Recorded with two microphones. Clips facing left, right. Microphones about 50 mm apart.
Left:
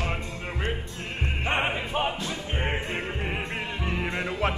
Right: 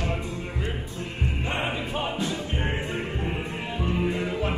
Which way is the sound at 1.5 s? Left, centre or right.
Left.